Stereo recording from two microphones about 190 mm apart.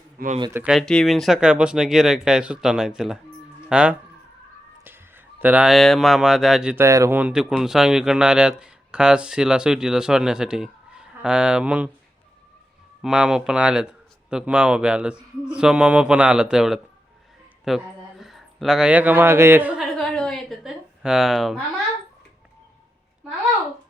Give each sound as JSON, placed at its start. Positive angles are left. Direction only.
{"t": 0.2, "sound": "speech", "side_deg": -50}
{"t": 0.5, "sound": "speech", "side_deg": -5}
{"t": 6.8, "sound": "speech", "side_deg": -15}
{"t": 13.0, "sound": "speech", "side_deg": -5}
{"t": 17.7, "sound": "a sound", "side_deg": 0}